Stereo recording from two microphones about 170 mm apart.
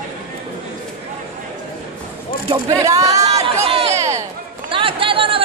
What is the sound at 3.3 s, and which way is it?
Chatter, 35° right (ahead or behind).